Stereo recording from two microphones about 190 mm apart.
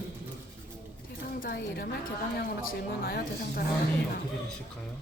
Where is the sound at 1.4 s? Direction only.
55° left (ahead or behind).